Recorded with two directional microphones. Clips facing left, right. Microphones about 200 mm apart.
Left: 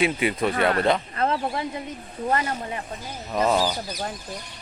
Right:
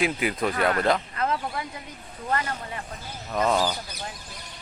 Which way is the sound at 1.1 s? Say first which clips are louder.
Left 3 dB; 30° left (ahead or behind).